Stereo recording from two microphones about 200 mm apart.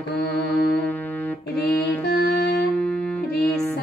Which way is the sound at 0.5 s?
10° left (ahead or behind).